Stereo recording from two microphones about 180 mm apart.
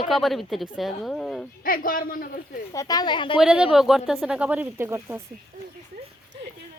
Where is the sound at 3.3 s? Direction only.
5° right (ahead or behind).